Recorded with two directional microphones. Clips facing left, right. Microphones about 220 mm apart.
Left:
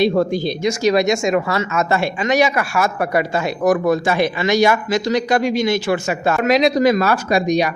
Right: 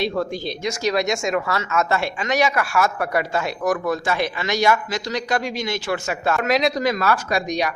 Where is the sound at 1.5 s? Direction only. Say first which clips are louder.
Left 3 dB; 15° left (ahead or behind).